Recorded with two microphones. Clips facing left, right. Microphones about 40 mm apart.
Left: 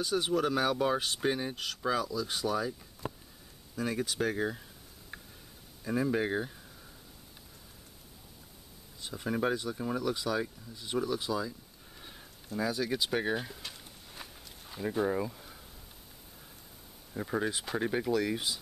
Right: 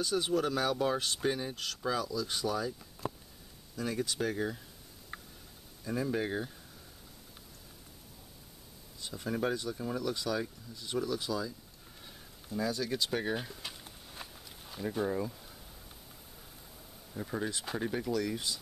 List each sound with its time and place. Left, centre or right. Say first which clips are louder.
0.0 s speech: left 1 dB; centre
3.7 s speech: left 2 dB; centre
5.9 s speech: left 3 dB; centre
9.0 s speech: left 2 dB; centre
12.5 s speech: left 2 dB; centre
13.6 s a sound: even; centre
14.8 s speech: left 2 dB; centre
17.1 s speech: left 4 dB; centre